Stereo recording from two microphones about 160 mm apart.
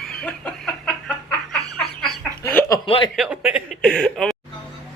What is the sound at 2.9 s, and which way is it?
Speech, 30° left (ahead or behind).